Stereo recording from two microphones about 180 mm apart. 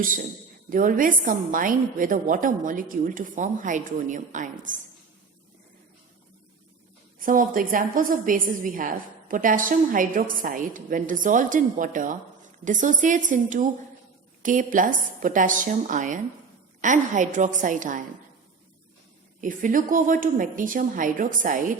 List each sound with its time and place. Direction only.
0.7 s a woman's voice: 50° right (ahead or behind)
7.2 s a woman's voice: 50° right (ahead or behind)
19.4 s a woman's voice: 45° right (ahead or behind)